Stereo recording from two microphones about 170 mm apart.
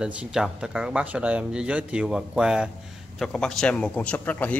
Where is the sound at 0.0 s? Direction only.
5° right (ahead or behind).